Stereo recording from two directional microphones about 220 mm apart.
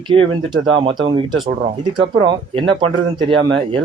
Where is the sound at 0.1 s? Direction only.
20° right (ahead or behind).